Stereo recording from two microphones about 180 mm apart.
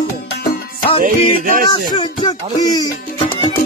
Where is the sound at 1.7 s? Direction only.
25° left (ahead or behind).